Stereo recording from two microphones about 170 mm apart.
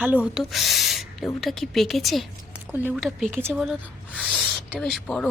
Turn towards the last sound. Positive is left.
turn(degrees=0)  # may be behind; listen again after turning